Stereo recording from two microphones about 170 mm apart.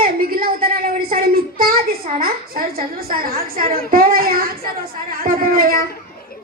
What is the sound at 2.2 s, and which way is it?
Speech, 60° right (ahead or behind).